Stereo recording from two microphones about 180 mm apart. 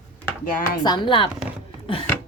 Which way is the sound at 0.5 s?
55° left (ahead or behind).